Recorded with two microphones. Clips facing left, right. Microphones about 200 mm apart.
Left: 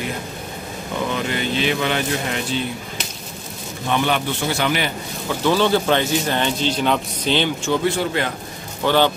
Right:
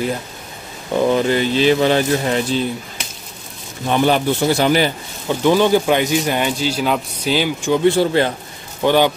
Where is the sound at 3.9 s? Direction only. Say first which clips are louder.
Right 5 dB; 35° right (ahead or behind).